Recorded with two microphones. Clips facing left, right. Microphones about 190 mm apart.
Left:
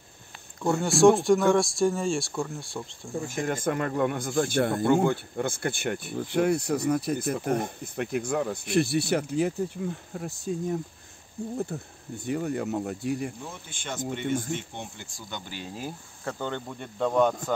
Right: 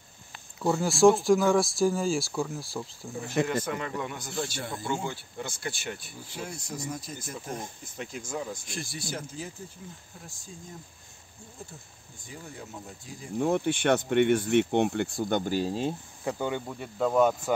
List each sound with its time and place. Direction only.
0.6 s speech: centre (ahead or behind)
3.4 s a man's voice: 50° left (ahead or behind); by 13.3 s 70° left (ahead or behind)
13.4 s speech: 65° right (ahead or behind); by 15.7 s 45° right (ahead or behind)
16.3 s speech: 10° right (ahead or behind)